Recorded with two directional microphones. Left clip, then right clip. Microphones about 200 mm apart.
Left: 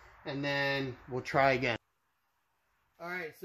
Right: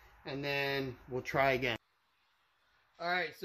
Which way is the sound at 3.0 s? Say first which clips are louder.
Right 5 dB; 10° left (ahead or behind).